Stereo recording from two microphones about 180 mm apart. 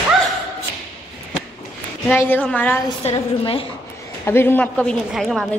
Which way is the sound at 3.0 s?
35° left (ahead or behind).